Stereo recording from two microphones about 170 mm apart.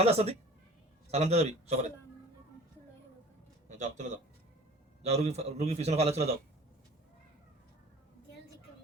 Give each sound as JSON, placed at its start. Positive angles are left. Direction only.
{"t": 0.0, "sound": "a man's voice", "side_deg": -40}
{"t": 3.7, "sound": "a man's voice", "side_deg": -45}